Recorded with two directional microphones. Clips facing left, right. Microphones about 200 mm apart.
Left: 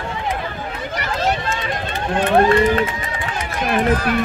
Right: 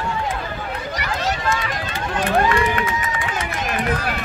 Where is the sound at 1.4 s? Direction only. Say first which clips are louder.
Even; 30° left (ahead or behind).